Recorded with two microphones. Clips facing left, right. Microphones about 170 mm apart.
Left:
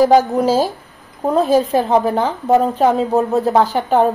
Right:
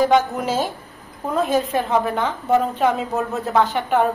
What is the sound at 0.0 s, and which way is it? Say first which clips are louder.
A woman's voice: left 5 dB; 35° left (ahead or behind).